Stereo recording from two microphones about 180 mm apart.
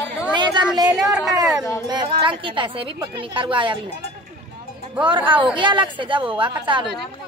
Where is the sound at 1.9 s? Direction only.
25° right (ahead or behind).